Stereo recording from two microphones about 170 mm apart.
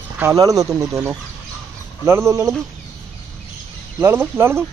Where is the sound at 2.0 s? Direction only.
15° right (ahead or behind).